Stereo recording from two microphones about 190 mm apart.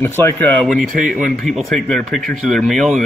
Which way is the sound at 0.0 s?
10° left (ahead or behind).